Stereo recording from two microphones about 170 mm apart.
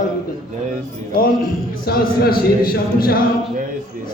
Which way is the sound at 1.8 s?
65° left (ahead or behind).